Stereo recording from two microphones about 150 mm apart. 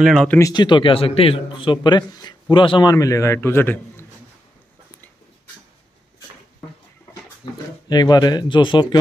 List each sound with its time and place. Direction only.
0.0 s speech: centre (ahead or behind)
0.4 s a man's voice: 30° left (ahead or behind)
7.4 s a man's voice: 30° left (ahead or behind)